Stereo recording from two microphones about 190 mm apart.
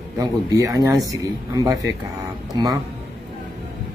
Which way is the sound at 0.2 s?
20° right (ahead or behind).